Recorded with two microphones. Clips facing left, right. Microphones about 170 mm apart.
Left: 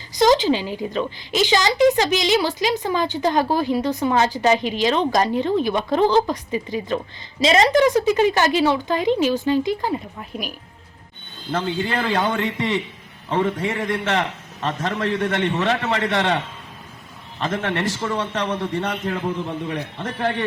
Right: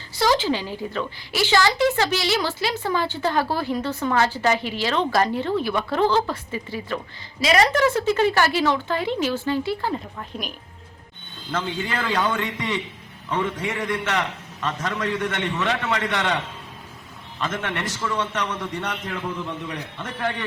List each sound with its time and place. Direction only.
0.1 s a woman's voice: 20° left (ahead or behind)
11.5 s a man's voice: 30° left (ahead or behind)
17.4 s a man's voice: 30° left (ahead or behind)